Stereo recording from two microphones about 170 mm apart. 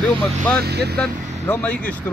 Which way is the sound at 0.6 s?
75° right (ahead or behind).